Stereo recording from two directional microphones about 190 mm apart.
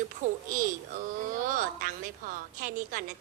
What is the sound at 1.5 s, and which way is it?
A woman's voice, 45° right (ahead or behind).